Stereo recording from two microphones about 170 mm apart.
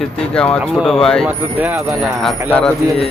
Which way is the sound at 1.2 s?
10° right (ahead or behind).